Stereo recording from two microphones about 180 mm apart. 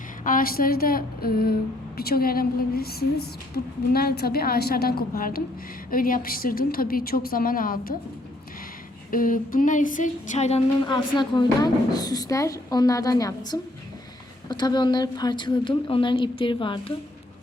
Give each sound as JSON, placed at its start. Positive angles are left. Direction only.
{"t": 0.3, "sound": "a woman's voice", "side_deg": 55}
{"t": 9.0, "sound": "a woman's voice", "side_deg": 50}
{"t": 10.8, "sound": "a woman's voice", "side_deg": 25}